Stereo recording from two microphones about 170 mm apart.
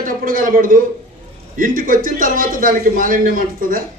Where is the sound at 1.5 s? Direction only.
55° right (ahead or behind).